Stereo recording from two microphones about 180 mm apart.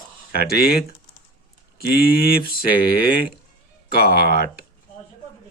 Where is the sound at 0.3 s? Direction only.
55° left (ahead or behind).